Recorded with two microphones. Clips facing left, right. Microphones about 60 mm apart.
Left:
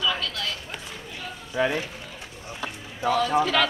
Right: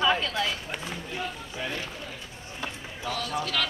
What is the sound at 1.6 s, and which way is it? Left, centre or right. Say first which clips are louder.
Speech: left 11 dB; left.